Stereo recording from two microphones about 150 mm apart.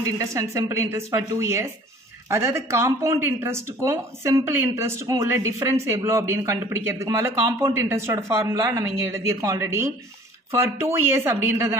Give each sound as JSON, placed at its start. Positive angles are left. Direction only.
{"t": 0.0, "sound": "speech", "side_deg": -20}